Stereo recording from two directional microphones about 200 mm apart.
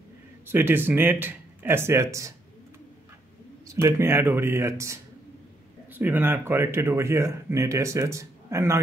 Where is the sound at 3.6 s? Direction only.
15° right (ahead or behind).